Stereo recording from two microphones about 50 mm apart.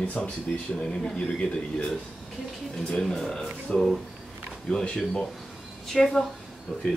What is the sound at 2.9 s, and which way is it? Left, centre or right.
Speech, centre.